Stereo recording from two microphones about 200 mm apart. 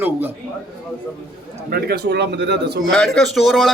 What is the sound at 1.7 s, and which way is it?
Speech, 55° right (ahead or behind).